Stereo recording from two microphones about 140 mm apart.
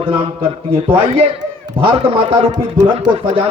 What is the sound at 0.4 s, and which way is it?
Speech, 40° right (ahead or behind).